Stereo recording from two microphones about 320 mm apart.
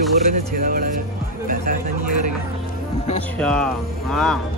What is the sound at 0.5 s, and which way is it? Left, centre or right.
Speech, right.